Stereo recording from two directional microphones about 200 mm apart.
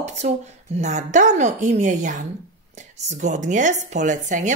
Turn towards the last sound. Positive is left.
turn(degrees=-40)  # may be behind; listen again after turning